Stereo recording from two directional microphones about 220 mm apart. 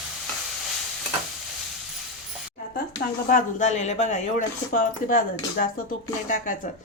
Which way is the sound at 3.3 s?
35° left (ahead or behind).